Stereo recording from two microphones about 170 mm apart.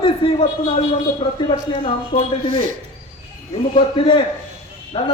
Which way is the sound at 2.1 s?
35° left (ahead or behind).